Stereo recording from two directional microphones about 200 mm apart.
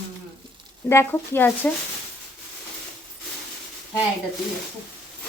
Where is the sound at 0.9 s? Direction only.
10° left (ahead or behind).